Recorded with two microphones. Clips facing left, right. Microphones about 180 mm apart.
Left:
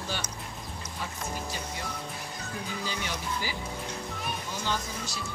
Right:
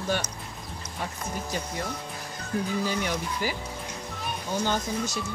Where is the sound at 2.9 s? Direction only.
50° right (ahead or behind).